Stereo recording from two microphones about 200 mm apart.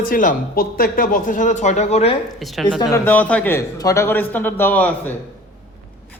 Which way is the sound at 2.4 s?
Centre (ahead or behind).